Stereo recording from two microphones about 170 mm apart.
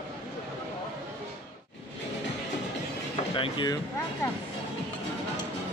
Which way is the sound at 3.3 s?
30° left (ahead or behind).